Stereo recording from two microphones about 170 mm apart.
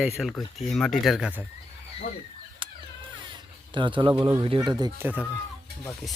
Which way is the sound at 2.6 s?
30° right (ahead or behind).